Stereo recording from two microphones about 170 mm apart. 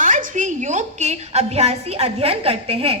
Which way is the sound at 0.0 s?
50° right (ahead or behind).